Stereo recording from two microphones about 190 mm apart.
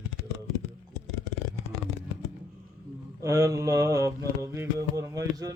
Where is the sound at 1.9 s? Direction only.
90° right.